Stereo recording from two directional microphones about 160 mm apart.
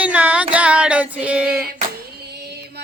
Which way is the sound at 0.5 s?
10° right (ahead or behind).